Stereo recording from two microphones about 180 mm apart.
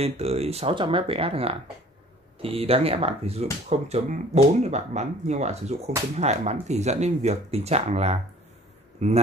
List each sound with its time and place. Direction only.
0.0 s speech: 35° right (ahead or behind)